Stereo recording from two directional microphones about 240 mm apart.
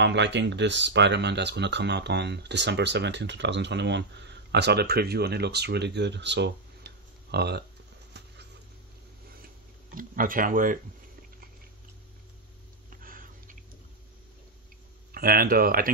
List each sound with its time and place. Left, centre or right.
0.0 s speech: right
9.9 s speech: right
13.0 s a sound: right
15.1 s speech: right